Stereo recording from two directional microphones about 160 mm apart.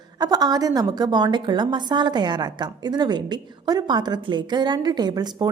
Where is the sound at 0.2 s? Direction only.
25° right (ahead or behind).